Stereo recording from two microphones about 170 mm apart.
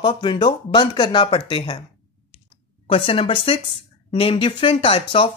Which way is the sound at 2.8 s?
30° left (ahead or behind).